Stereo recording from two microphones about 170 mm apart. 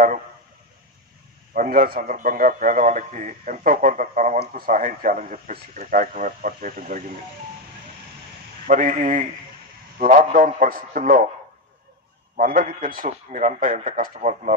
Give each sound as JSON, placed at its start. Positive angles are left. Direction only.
{"t": 1.5, "sound": "a man's voice", "side_deg": -55}
{"t": 8.6, "sound": "a man's voice", "side_deg": -50}
{"t": 12.4, "sound": "a man's voice", "side_deg": -55}